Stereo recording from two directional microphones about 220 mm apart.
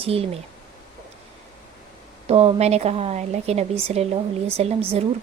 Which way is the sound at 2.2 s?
25° right (ahead or behind).